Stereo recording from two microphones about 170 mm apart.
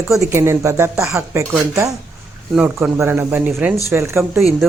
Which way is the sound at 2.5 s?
5° right (ahead or behind).